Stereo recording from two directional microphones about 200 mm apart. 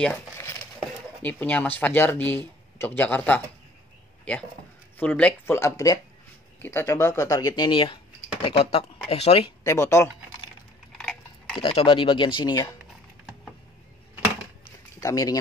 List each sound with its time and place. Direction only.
0.0 s speech: 15° left (ahead or behind)
4.2 s a sound: 5° left (ahead or behind)
4.9 s speech: 5° left (ahead or behind); by 9.5 s 30° left (ahead or behind)
9.6 s speech: 15° left (ahead or behind)
11.0 s a sound: 5° left (ahead or behind)
11.5 s speech: 25° left (ahead or behind)
15.0 s speech: 15° left (ahead or behind)